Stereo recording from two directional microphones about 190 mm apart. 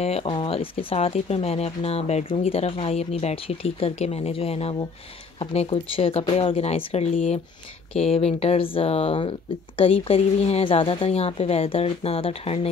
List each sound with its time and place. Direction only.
0.0 s speech: 30° left (ahead or behind)